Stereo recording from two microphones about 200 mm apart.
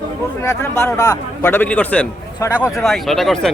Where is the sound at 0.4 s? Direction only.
15° left (ahead or behind).